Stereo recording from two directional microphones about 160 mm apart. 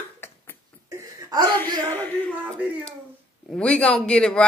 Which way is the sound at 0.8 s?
20° right (ahead or behind).